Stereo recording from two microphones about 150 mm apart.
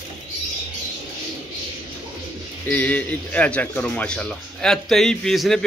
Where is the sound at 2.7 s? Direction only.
10° left (ahead or behind).